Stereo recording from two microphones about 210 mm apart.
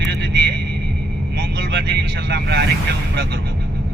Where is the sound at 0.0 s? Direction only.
50° right (ahead or behind).